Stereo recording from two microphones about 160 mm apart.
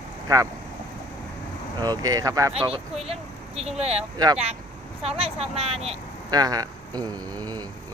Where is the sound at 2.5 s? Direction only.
35° right (ahead or behind).